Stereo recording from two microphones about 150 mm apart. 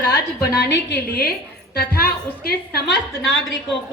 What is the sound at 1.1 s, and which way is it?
A woman's voice, 90° left.